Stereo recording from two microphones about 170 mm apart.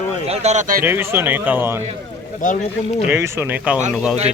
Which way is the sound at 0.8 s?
15° right (ahead or behind).